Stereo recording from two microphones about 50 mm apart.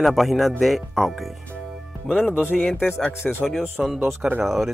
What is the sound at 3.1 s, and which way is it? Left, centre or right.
Speech, left.